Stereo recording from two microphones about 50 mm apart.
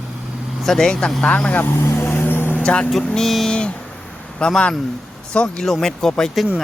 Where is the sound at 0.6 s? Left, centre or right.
Centre.